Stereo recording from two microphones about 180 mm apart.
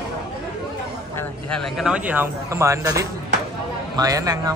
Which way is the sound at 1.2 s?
5° left (ahead or behind).